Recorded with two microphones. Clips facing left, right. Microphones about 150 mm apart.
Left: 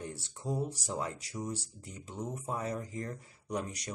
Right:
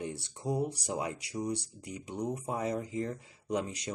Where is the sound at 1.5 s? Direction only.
75° right (ahead or behind).